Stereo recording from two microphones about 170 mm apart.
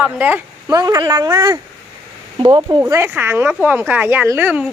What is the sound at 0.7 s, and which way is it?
Speech, 20° right (ahead or behind).